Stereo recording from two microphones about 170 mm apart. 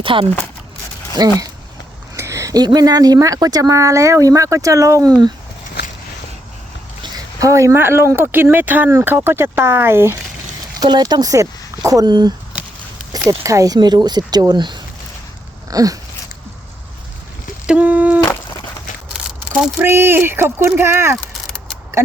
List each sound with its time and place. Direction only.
0.0 s speech: 30° right (ahead or behind)
7.0 s speech: 20° right (ahead or behind)
17.7 s speech: 10° right (ahead or behind)
19.8 s speech: 15° right (ahead or behind)